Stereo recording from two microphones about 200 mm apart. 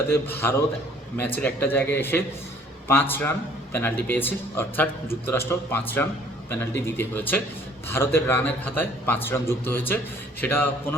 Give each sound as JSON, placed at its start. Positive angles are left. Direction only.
{"t": 0.1, "sound": "a man's voice", "side_deg": 10}